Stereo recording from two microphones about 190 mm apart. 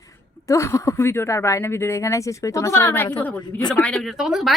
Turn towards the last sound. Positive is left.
turn(degrees=0)  # may be behind; listen again after turning